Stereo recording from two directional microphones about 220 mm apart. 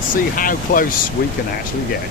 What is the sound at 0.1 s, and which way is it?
Speech, 40° left (ahead or behind).